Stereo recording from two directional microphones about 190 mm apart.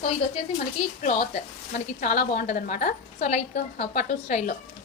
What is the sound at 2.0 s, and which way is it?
A woman's voice, 40° left (ahead or behind).